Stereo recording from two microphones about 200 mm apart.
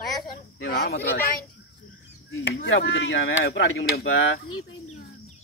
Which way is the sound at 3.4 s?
50° left (ahead or behind).